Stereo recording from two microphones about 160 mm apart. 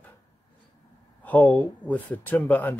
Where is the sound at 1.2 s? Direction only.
10° left (ahead or behind).